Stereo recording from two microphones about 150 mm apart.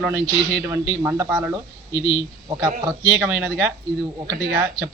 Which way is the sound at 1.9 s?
30° left (ahead or behind).